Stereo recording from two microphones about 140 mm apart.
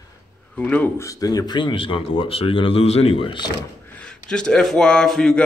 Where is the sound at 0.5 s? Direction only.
10° left (ahead or behind); by 3.5 s 35° left (ahead or behind).